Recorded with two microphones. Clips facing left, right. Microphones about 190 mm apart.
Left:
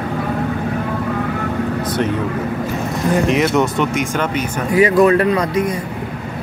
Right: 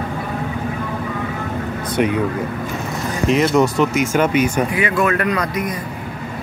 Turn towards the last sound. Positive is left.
turn(degrees=30)  # may be behind; listen again after turning